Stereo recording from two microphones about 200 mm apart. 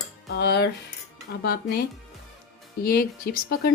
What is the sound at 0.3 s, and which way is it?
A woman's voice, 55° left (ahead or behind).